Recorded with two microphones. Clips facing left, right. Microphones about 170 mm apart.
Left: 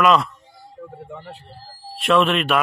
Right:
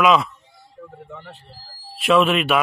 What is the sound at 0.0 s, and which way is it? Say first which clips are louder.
Speech: even; centre (ahead or behind).